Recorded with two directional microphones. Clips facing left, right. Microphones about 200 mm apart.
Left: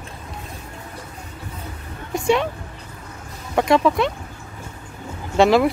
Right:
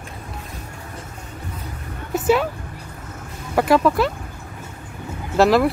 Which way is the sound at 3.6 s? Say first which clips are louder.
Right 1 dB; centre (ahead or behind).